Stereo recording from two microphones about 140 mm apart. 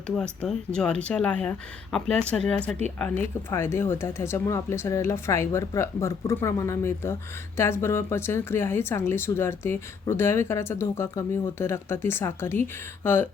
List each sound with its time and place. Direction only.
0.2 s speech: 5° left (ahead or behind)
3.5 s speech: 20° left (ahead or behind)